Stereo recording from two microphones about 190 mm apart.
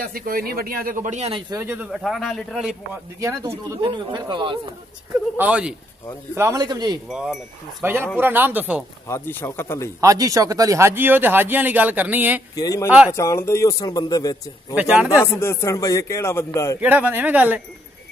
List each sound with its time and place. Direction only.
0.0 s a man's voice: 50° right (ahead or behind)
1.5 s speech: 10° right (ahead or behind)
3.2 s speech: 15° right (ahead or behind)
5.4 s speech: 5° right (ahead or behind); by 7.0 s 20° right (ahead or behind)
7.1 s speech: centre (ahead or behind)
9.0 s a man's voice: 15° left (ahead or behind)
9.9 s speech: 20° right (ahead or behind)
12.5 s a man's voice: 20° left (ahead or behind)
14.8 s speech: 10° right (ahead or behind)
15.3 s a man's voice: 15° left (ahead or behind)
16.8 s speech: 10° right (ahead or behind)